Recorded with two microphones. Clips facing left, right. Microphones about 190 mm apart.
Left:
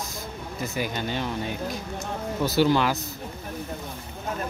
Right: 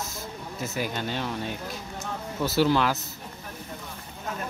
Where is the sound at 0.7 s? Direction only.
Centre (ahead or behind).